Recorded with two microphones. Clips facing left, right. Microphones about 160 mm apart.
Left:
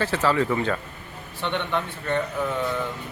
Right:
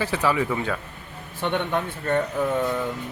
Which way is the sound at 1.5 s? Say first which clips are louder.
Right 2 dB; 45° right (ahead or behind).